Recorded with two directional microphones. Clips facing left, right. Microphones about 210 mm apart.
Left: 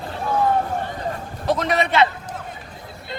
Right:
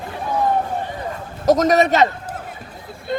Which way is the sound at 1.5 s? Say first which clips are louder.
Right 7 dB; 40° right (ahead or behind).